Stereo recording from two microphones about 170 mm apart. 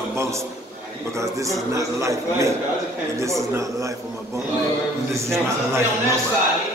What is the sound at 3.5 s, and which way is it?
Speech, 20° right (ahead or behind).